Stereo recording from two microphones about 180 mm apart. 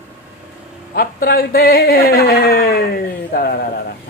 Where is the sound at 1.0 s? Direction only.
55° left (ahead or behind).